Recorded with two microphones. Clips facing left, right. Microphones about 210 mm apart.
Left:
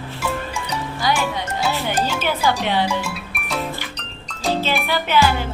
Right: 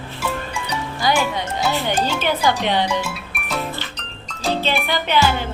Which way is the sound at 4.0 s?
Centre (ahead or behind).